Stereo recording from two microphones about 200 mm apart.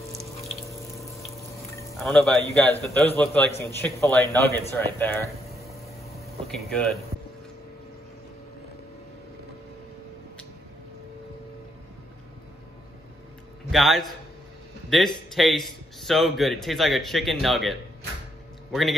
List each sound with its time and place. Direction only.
0.9 s water: centre (ahead or behind)
1.7 s a sound: 15° left (ahead or behind)
2.0 s a man's voice: centre (ahead or behind)
4.9 s a sound: 10° left (ahead or behind)
6.4 s speech: 5° left (ahead or behind)
13.7 s a man's voice: centre (ahead or behind)
15.3 s a man's voice: centre (ahead or behind)